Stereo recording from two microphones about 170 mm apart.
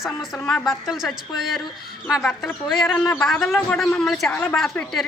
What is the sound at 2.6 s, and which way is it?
A woman's voice, centre (ahead or behind).